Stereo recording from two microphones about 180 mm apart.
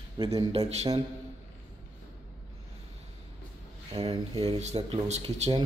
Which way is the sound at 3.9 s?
35° right (ahead or behind).